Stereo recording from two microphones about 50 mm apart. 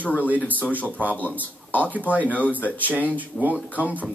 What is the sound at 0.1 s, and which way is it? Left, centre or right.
Speech, right.